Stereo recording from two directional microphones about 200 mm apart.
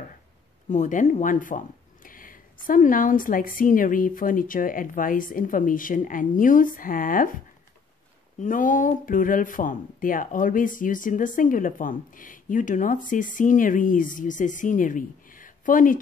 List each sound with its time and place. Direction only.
0.7 s a woman's voice: 40° left (ahead or behind)
8.4 s speech: 40° left (ahead or behind)